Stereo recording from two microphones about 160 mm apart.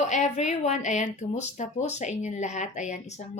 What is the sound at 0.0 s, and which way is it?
Speech, 45° left (ahead or behind).